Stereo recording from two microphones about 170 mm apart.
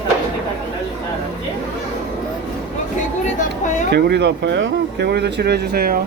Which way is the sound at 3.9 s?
80° right.